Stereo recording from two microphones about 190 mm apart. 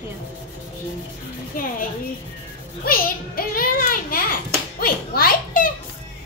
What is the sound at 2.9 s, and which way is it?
A child's voice, 50° left (ahead or behind).